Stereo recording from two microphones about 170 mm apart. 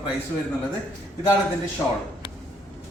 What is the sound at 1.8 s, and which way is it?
Speech, 15° left (ahead or behind).